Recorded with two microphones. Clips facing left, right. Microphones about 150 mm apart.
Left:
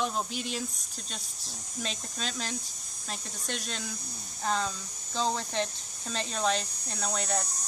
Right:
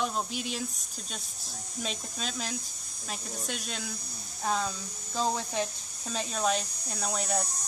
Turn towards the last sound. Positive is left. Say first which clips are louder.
# right 1 dB
turn(degrees=-5)  # may be behind; listen again after turning